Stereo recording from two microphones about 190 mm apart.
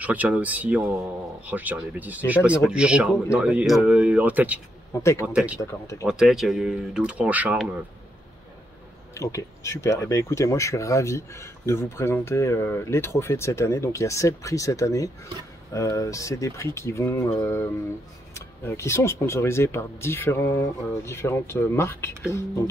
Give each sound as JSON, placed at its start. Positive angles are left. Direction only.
{"t": 0.0, "sound": "speech", "side_deg": -10}
{"t": 5.6, "sound": "speech", "side_deg": 15}
{"t": 6.0, "sound": "speech", "side_deg": 0}
{"t": 9.1, "sound": "speech", "side_deg": 15}